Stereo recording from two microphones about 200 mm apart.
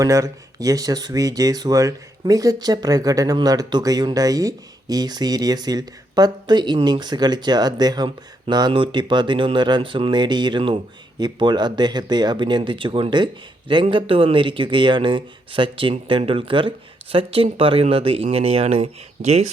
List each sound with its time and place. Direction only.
0.0 s speech: 15° right (ahead or behind); by 19.5 s 35° right (ahead or behind)